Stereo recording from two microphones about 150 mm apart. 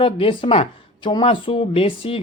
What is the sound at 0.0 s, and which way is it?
Speech, 35° left (ahead or behind).